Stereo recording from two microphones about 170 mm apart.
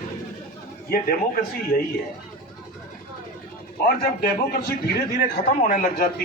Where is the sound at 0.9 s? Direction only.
60° left (ahead or behind).